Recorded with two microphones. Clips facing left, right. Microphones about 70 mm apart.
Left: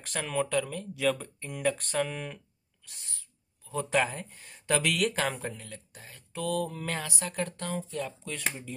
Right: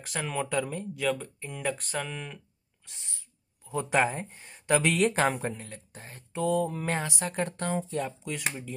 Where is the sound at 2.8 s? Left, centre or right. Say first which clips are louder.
Right 1 dB; right.